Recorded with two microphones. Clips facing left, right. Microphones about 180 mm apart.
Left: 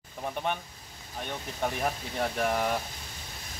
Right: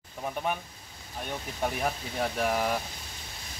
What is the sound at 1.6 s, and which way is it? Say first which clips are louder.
Speech: even; centre (ahead or behind).